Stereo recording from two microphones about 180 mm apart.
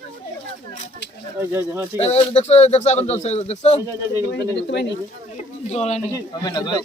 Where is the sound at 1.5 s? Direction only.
15° right (ahead or behind).